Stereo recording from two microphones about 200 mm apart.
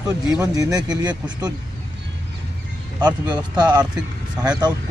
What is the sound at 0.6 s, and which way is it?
Speech, 20° right (ahead or behind).